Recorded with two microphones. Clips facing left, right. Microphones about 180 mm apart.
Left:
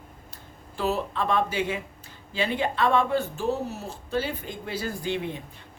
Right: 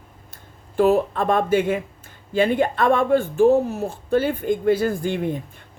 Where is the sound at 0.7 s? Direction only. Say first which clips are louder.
Right 10 dB; 50° right (ahead or behind).